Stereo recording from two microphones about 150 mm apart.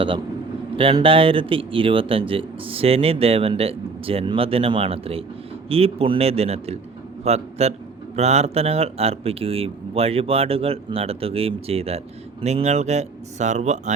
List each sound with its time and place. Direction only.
0.8 s a man's voice: 35° right (ahead or behind); by 13.9 s 50° right (ahead or behind)